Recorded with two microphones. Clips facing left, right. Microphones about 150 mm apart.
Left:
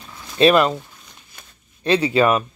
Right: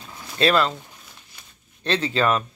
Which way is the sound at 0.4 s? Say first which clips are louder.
Left 5 dB; 15° left (ahead or behind).